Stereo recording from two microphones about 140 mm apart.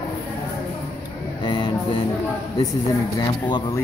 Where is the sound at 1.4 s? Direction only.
35° left (ahead or behind).